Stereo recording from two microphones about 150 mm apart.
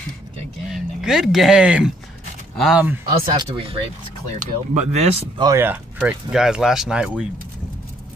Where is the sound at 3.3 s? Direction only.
30° right (ahead or behind).